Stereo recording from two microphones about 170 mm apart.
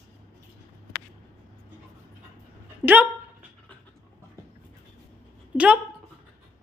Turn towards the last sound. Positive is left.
turn(degrees=-5)  # may be behind; listen again after turning